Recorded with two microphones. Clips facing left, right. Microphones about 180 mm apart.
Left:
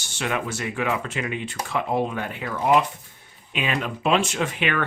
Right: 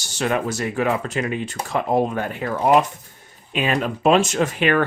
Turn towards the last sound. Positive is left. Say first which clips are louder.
# right 6 dB
turn(degrees=-40)  # may be behind; listen again after turning